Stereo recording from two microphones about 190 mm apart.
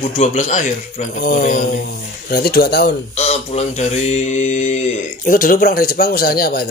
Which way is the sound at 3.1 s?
35° left (ahead or behind).